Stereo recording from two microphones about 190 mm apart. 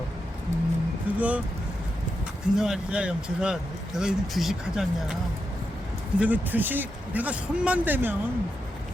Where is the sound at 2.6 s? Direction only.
5° right (ahead or behind).